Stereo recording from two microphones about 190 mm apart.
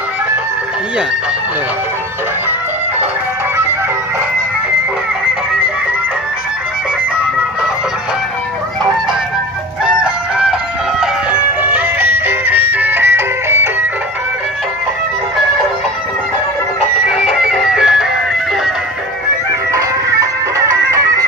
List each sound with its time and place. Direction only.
9.8 s music: 5° right (ahead or behind)
11.6 s music: 10° right (ahead or behind)
17.0 s music: 5° right (ahead or behind)
19.7 s music: 15° right (ahead or behind)